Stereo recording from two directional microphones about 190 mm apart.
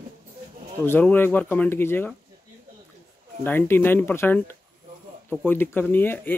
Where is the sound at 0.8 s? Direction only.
10° left (ahead or behind).